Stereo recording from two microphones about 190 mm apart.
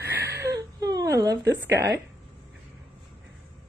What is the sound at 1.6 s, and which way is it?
Speech, 15° right (ahead or behind).